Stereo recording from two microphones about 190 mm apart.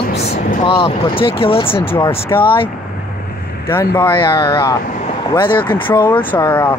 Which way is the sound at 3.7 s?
10° left (ahead or behind).